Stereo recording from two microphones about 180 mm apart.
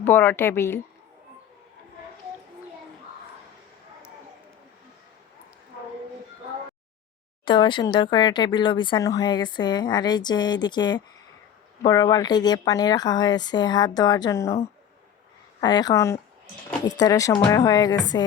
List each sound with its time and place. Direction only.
0.0 s speech: 10° left (ahead or behind)
7.4 s speech: 25° left (ahead or behind)
15.6 s speech: 20° left (ahead or behind)